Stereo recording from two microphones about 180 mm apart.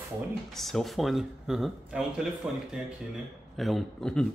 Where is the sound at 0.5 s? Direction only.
Centre (ahead or behind).